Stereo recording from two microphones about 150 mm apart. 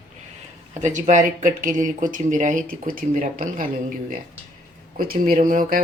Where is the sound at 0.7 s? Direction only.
55° right (ahead or behind).